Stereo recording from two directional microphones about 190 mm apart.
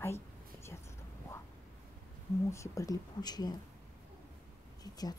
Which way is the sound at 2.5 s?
15° left (ahead or behind).